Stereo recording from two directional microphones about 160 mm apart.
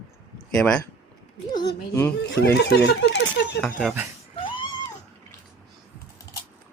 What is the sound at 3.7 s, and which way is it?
Speech, 10° right (ahead or behind).